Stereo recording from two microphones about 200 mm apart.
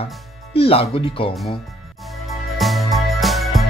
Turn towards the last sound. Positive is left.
turn(degrees=0)  # may be behind; listen again after turning